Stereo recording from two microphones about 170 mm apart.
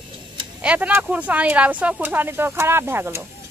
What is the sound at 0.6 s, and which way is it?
Speech, 10° right (ahead or behind).